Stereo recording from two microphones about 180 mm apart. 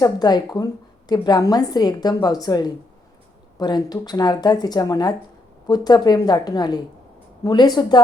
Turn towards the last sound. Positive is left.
turn(degrees=25)  # may be behind; listen again after turning